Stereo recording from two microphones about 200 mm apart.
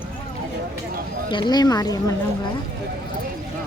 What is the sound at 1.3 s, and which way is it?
Speech, 20° left (ahead or behind).